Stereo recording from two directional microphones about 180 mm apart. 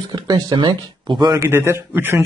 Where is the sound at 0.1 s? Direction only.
25° right (ahead or behind).